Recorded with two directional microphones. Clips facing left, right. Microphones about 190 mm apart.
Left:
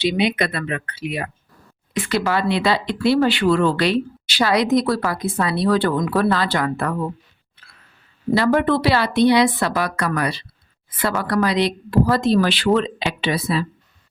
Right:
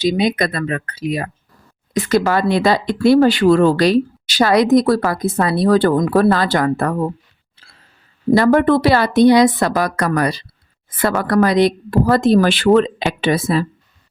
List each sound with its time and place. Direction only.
0.0 s speech: 40° right (ahead or behind)
7.5 s a sound: 30° right (ahead or behind)
8.3 s speech: 50° right (ahead or behind)